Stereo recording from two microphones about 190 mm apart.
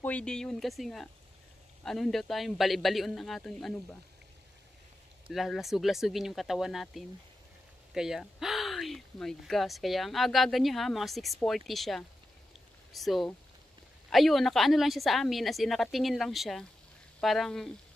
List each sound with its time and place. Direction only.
0.0 s speech: 5° left (ahead or behind)
5.3 s speech: centre (ahead or behind)